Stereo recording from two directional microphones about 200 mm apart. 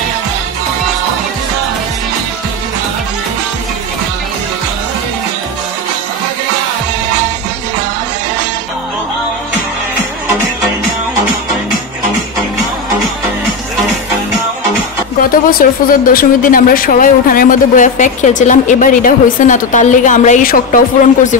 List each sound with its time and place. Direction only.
15.6 s speech: 45° left (ahead or behind)